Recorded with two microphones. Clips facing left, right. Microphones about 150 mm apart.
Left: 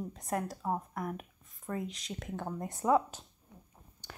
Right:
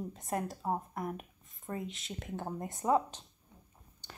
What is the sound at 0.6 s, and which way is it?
Speech, 20° right (ahead or behind).